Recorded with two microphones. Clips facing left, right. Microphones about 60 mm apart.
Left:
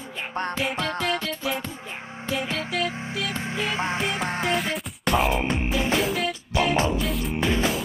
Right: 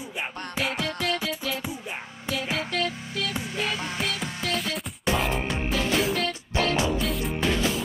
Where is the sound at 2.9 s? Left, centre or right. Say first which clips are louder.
Left 2 dB; left.